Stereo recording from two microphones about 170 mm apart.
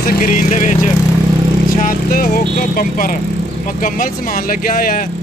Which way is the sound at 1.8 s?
55° left (ahead or behind).